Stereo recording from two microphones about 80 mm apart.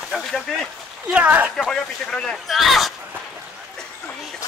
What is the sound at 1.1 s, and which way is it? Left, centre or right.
Speech, centre.